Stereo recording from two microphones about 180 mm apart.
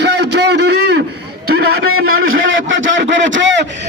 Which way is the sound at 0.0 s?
70° right (ahead or behind).